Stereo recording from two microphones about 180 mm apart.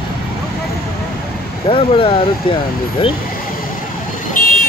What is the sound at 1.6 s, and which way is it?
Vehicle, 30° left (ahead or behind).